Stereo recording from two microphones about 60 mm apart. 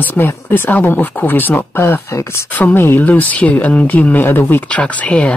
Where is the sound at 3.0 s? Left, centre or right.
Left.